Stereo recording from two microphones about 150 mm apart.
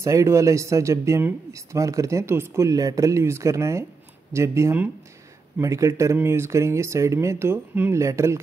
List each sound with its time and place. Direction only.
0.0 s speech: 20° right (ahead or behind)